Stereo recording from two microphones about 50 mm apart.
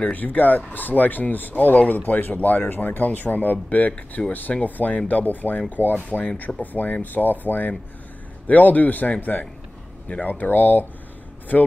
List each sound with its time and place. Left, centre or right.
0.1 s speech: left